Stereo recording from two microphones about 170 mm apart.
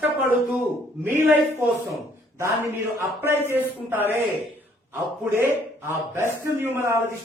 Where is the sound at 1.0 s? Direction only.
15° right (ahead or behind).